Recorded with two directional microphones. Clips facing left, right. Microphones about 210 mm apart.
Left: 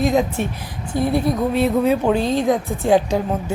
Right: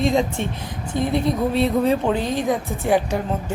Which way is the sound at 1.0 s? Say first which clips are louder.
Left 2 dB; 20° right (ahead or behind).